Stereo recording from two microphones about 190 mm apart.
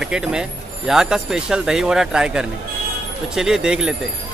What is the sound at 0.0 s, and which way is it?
Speech, 5° right (ahead or behind).